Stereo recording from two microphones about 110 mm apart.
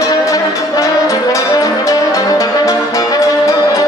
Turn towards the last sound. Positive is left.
turn(degrees=30)  # may be behind; listen again after turning